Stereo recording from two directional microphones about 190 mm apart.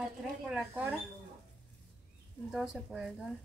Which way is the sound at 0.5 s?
5° right (ahead or behind).